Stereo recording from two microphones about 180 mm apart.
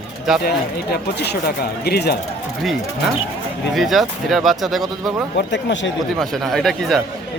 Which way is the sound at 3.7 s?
Centre (ahead or behind).